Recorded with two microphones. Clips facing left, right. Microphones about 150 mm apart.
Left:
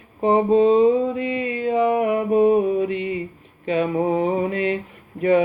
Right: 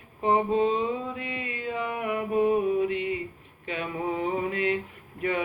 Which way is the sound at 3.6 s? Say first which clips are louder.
Left 12 dB; 30° left (ahead or behind).